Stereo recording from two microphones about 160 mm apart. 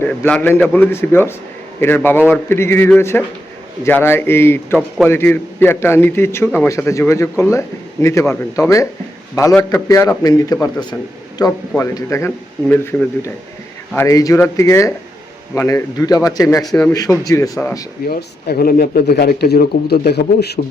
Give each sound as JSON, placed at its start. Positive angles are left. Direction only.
{"t": 0.0, "sound": "a man's voice", "side_deg": 10}
{"t": 18.1, "sound": "speech", "side_deg": 70}